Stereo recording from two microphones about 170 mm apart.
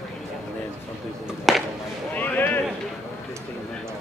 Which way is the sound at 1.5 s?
Centre (ahead or behind).